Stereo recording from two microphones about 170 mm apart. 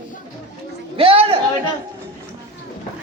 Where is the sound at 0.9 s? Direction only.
35° right (ahead or behind).